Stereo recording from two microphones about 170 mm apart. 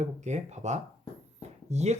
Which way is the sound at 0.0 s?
40° right (ahead or behind).